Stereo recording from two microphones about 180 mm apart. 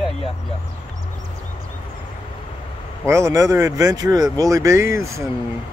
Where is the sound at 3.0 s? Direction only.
15° right (ahead or behind).